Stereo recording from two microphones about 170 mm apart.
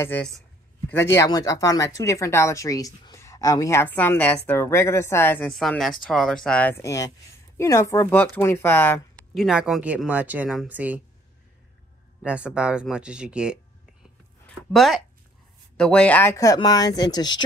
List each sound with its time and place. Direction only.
0.0 s speech: 10° left (ahead or behind)
9.3 s speech: centre (ahead or behind)
12.2 s speech: 5° right (ahead or behind)
14.4 s a sound: centre (ahead or behind)
15.8 s speech: 5° left (ahead or behind); by 17.4 s 25° left (ahead or behind)